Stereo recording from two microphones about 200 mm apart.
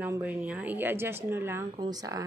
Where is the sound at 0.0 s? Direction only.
10° right (ahead or behind).